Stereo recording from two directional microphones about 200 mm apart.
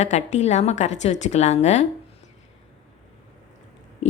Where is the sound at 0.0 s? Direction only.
35° left (ahead or behind).